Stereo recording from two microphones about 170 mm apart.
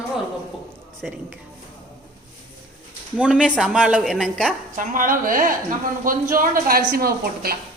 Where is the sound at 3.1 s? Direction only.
5° right (ahead or behind).